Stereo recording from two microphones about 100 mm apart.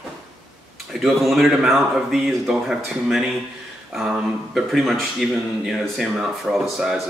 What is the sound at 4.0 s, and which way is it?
Speech, centre (ahead or behind).